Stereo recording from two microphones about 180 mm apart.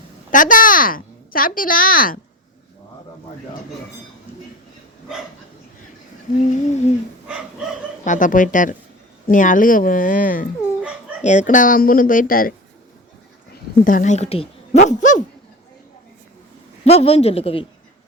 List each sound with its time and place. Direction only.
0.3 s a woman's voice: 45° left (ahead or behind)
6.3 s speech: 45° left (ahead or behind)
8.0 s speech: 45° left (ahead or behind)
16.8 s a man's voice: 35° left (ahead or behind)